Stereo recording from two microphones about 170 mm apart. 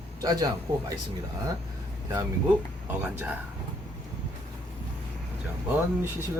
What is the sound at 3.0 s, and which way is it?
Speech, 10° right (ahead or behind).